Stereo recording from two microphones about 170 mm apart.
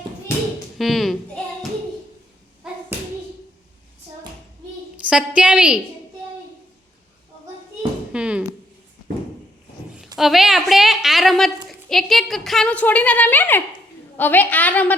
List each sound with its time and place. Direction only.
0.8 s a woman's voice: centre (ahead or behind)
5.0 s a woman's voice: 5° right (ahead or behind)
8.1 s a sound: 5° right (ahead or behind)
10.2 s a woman's voice: centre (ahead or behind)